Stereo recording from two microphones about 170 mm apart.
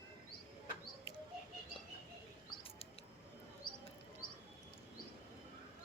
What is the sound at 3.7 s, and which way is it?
Chirp, 60° left (ahead or behind).